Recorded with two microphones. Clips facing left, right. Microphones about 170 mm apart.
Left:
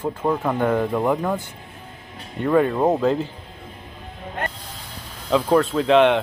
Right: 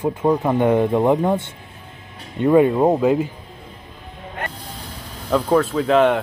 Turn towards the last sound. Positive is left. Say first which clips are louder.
# even
turn(degrees=0)  # may be behind; listen again after turning